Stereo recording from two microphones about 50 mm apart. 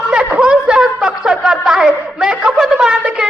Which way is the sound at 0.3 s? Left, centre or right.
Centre.